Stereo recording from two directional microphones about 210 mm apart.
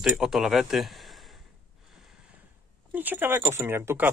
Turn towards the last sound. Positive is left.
turn(degrees=-10)  # may be behind; listen again after turning